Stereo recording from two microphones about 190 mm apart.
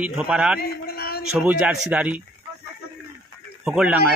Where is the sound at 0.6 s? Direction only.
55° left (ahead or behind).